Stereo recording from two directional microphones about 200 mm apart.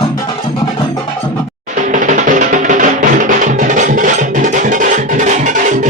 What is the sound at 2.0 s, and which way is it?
Music, 40° right (ahead or behind).